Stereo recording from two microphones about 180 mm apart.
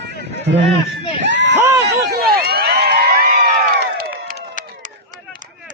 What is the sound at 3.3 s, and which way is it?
Crowd, 60° right (ahead or behind).